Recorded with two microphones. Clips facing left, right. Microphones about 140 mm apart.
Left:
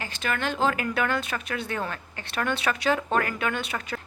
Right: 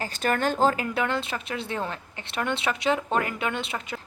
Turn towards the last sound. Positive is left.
turn(degrees=-25)  # may be behind; listen again after turning